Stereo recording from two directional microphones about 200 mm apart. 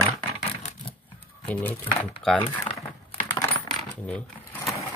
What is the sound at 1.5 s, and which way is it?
Speech, 10° left (ahead or behind).